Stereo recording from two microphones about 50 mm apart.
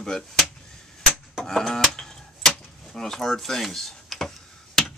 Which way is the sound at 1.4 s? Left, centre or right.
Centre.